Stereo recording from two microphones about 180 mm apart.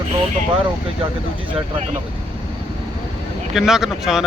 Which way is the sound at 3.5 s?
Centre (ahead or behind).